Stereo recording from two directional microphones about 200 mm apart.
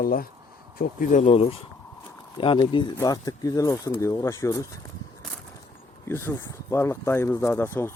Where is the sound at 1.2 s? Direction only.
30° left (ahead or behind).